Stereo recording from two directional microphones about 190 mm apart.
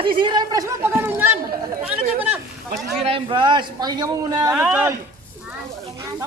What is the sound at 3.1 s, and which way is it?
Speech, 25° right (ahead or behind).